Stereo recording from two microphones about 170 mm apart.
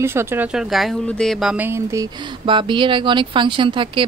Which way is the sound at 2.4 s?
30° right (ahead or behind).